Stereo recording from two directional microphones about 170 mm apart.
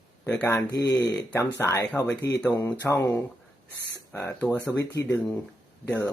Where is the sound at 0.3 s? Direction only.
10° left (ahead or behind).